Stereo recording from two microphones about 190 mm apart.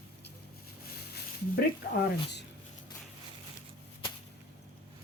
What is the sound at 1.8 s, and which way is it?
Speech, 55° left (ahead or behind).